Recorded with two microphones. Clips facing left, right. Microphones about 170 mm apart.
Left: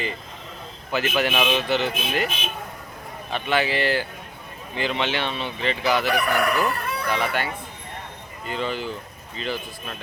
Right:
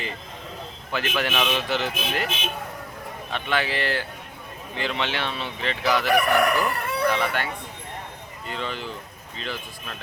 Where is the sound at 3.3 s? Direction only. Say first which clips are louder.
Left 3 dB; 5° left (ahead or behind).